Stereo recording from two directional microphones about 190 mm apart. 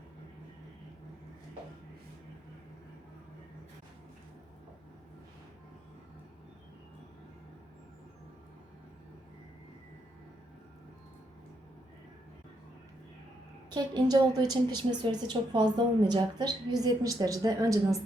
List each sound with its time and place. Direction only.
13.7 s a woman's voice: 20° right (ahead or behind)